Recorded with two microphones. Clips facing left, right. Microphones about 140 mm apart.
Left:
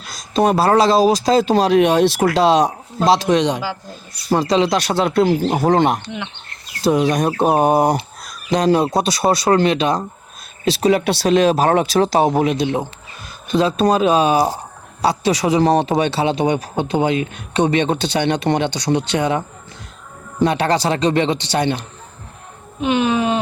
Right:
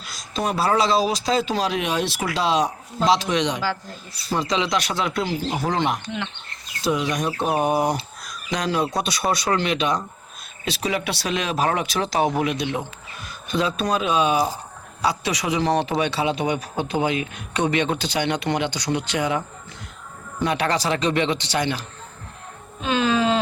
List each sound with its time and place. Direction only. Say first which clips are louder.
0.1 s speech: left 9 dB; 40° left (ahead or behind)
4.4 s speech: left 6 dB; 35° left (ahead or behind)
5.3 s speech: left 9 dB; 50° left (ahead or behind)
6.8 s speech: left 7 dB; 35° left (ahead or behind)
15.8 s speech: left 5 dB; 25° left (ahead or behind)